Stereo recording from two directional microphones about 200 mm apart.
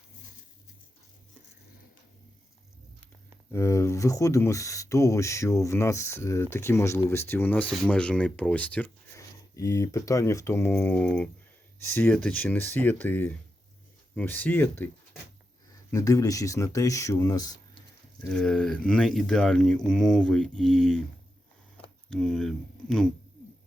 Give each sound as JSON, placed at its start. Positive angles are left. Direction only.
{"t": 3.5, "sound": "speech", "side_deg": 15}
{"t": 18.3, "sound": "speech", "side_deg": 5}
{"t": 22.1, "sound": "speech", "side_deg": 0}